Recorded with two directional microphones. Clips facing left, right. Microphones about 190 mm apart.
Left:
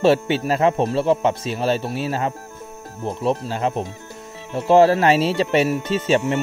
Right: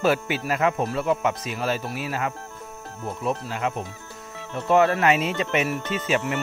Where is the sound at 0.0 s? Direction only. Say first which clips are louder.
Left 6 dB; 30° left (ahead or behind).